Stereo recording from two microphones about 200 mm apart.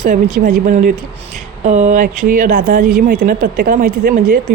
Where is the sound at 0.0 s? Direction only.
40° right (ahead or behind).